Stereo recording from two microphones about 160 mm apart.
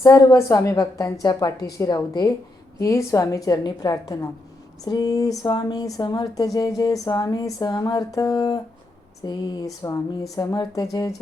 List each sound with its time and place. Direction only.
0.0 s speech: 20° left (ahead or behind)